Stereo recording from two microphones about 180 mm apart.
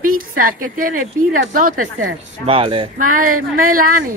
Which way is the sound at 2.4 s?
30° right (ahead or behind).